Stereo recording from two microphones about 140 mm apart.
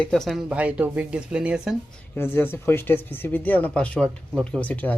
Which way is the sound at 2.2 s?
15° left (ahead or behind).